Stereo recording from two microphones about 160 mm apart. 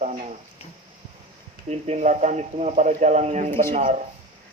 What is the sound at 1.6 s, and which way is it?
Speech, 45° right (ahead or behind).